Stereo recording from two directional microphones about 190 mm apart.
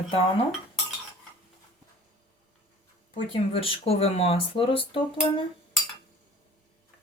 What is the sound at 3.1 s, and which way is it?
Speech, 30° left (ahead or behind).